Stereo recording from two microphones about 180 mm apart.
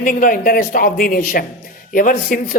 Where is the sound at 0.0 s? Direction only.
50° left (ahead or behind).